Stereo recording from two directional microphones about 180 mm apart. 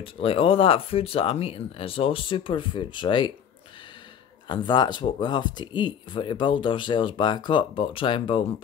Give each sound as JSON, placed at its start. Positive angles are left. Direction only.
{"t": 0.0, "sound": "speech", "side_deg": 30}
{"t": 4.5, "sound": "speech", "side_deg": 25}